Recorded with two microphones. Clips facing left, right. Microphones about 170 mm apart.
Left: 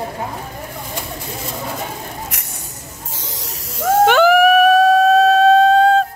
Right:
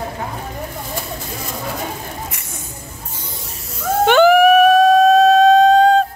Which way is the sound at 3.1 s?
90° left.